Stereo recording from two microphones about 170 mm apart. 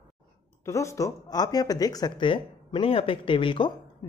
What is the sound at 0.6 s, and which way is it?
Speech, 15° left (ahead or behind).